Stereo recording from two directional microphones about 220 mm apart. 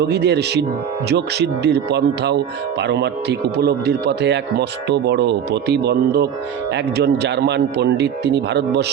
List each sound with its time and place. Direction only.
0.1 s speech: 50° right (ahead or behind)